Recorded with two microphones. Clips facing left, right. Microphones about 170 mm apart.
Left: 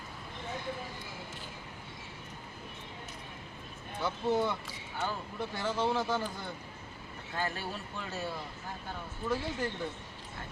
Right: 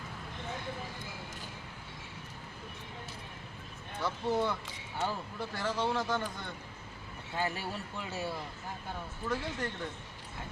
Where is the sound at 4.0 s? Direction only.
Centre (ahead or behind).